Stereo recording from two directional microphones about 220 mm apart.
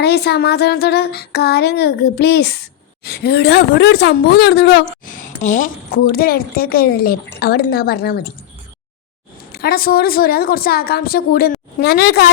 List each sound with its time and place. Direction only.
0.0 s speech: 45° left (ahead or behind)
9.5 s speech: 45° left (ahead or behind)